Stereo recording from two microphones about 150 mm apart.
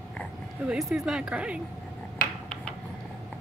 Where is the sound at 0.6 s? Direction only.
5° right (ahead or behind).